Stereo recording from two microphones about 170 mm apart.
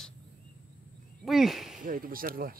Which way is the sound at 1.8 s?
55° right (ahead or behind).